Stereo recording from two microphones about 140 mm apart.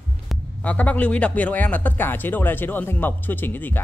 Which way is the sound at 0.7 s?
10° left (ahead or behind).